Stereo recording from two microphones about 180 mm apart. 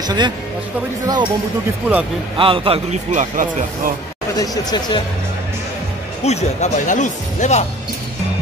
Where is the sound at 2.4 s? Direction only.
30° right (ahead or behind); by 3.9 s 45° right (ahead or behind).